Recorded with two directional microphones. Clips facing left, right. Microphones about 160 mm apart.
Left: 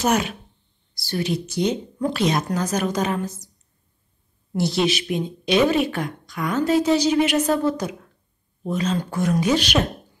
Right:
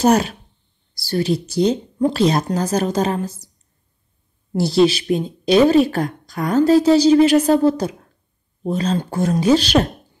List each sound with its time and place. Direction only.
0.0 s a woman's voice: 35° right (ahead or behind)
4.6 s a woman's voice: 35° right (ahead or behind)